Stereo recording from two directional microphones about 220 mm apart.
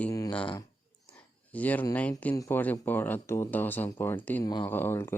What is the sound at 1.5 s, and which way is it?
Speech, 5° left (ahead or behind).